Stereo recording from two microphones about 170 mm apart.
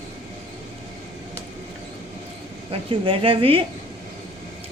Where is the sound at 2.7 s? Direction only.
30° right (ahead or behind).